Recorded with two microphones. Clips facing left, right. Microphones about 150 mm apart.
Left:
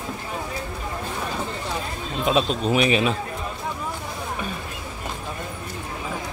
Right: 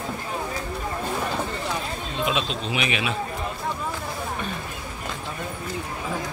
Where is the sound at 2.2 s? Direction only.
40° left (ahead or behind).